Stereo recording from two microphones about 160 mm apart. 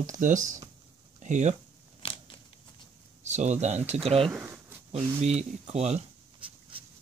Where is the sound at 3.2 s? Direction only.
45° right (ahead or behind).